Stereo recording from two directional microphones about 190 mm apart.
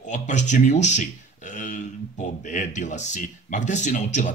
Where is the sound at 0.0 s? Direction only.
40° left (ahead or behind).